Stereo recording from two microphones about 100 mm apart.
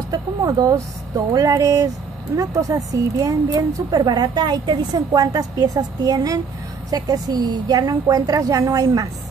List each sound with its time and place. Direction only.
0.1 s speech: 40° right (ahead or behind)